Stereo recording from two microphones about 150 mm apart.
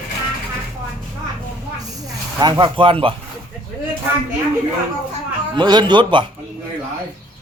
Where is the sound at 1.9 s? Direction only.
25° right (ahead or behind).